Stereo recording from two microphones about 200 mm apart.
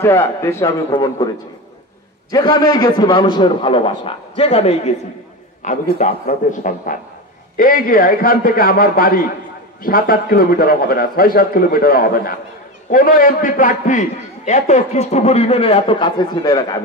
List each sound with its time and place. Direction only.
0.0 s a man's voice: 10° left (ahead or behind)
2.3 s a man's voice: 20° left (ahead or behind)